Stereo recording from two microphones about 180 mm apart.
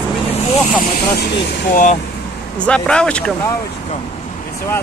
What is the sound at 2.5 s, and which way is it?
Speech, 5° left (ahead or behind).